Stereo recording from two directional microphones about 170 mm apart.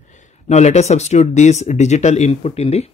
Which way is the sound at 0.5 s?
40° left (ahead or behind).